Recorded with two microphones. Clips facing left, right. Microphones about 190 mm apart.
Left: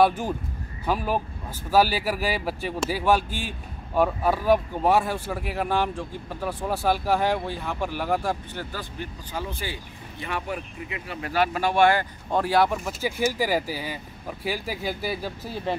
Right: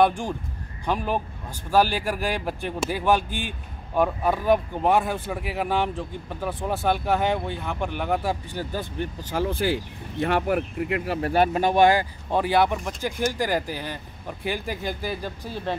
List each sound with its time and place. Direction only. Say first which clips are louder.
0.0 s speech: even; 5° left (ahead or behind)
9.3 s speech: right 10 dB; 55° right (ahead or behind)
11.1 s speech: right 8 dB; 40° right (ahead or behind)
11.5 s speech: even; 20° right (ahead or behind); by 15.7 s 10° left (ahead or behind)